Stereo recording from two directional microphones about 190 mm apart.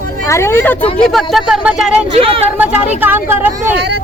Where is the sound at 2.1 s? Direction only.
30° right (ahead or behind).